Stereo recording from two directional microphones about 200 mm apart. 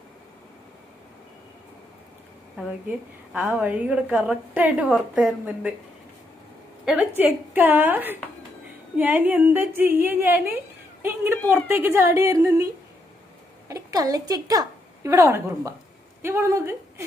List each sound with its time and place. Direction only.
2.6 s a woman's voice: 10° right (ahead or behind)
6.9 s a woman's voice: 10° right (ahead or behind)
13.7 s a woman's voice: 15° right (ahead or behind)